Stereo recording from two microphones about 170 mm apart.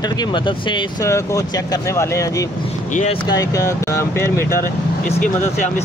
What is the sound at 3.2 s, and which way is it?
Speech, 20° left (ahead or behind).